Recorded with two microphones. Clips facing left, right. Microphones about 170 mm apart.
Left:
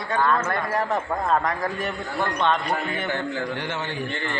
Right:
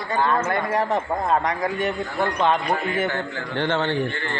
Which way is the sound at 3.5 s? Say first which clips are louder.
Right 7 dB; 55° right (ahead or behind).